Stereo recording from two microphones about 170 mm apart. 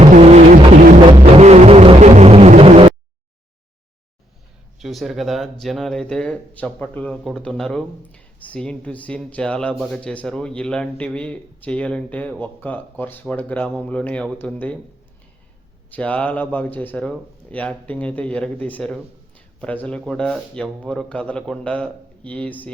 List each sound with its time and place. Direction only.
0.0 s vehicle: 40° right (ahead or behind)
1.0 s music: 40° right (ahead or behind)
4.8 s speech: centre (ahead or behind)
15.9 s speech: 10° left (ahead or behind)